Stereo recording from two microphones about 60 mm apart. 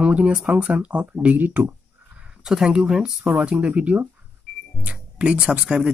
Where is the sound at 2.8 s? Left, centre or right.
Centre.